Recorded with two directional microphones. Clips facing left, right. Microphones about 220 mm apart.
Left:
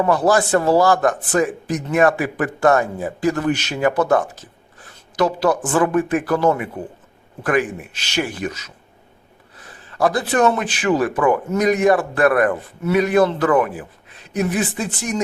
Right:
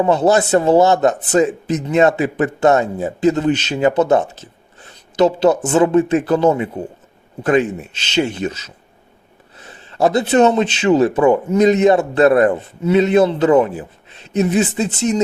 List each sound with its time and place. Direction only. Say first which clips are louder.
0.0 s a man's voice: right 3 dB; 25° right (ahead or behind)